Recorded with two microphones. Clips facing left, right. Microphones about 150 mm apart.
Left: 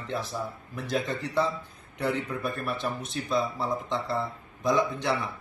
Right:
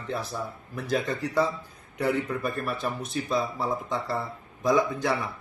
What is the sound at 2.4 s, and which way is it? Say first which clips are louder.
Speech: right 1 dB; 5° right (ahead or behind).